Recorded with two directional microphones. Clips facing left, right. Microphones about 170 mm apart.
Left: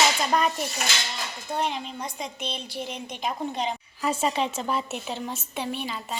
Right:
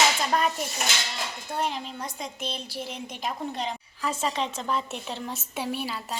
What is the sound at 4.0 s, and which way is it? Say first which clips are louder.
A woman's voice: left 3 dB; 15° left (ahead or behind).